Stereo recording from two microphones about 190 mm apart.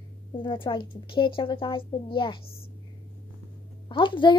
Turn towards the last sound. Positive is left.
turn(degrees=25)  # may be behind; listen again after turning